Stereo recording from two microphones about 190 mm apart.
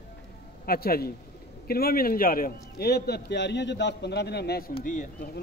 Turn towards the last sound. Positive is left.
turn(degrees=40)  # may be behind; listen again after turning